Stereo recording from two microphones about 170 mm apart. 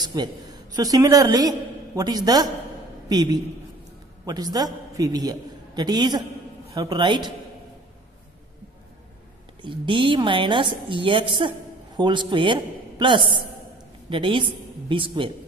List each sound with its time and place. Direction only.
0.0 s a woman's voice: 25° right (ahead or behind)
9.6 s a man's voice: 30° right (ahead or behind)